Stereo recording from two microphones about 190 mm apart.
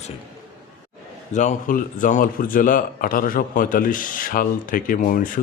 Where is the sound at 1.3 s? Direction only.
45° left (ahead or behind).